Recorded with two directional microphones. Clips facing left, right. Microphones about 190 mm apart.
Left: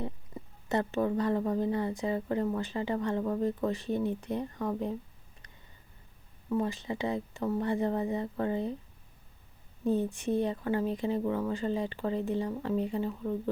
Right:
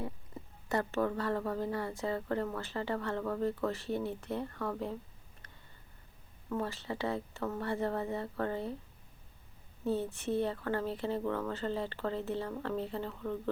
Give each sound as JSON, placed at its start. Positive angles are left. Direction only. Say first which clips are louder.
{"t": 0.7, "sound": "a woman's voice", "louder": "left 3 dB", "side_deg": 20}
{"t": 6.5, "sound": "a woman's voice", "louder": "left 5 dB", "side_deg": 15}
{"t": 9.8, "sound": "a woman's voice", "louder": "left 4 dB", "side_deg": 15}